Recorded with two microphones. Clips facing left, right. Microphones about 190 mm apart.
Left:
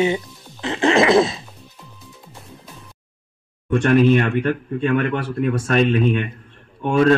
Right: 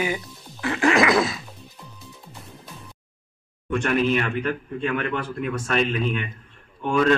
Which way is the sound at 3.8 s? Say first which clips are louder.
Left 7 dB; 55° left (ahead or behind).